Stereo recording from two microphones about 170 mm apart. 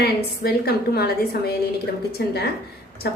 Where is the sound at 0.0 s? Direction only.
70° left (ahead or behind).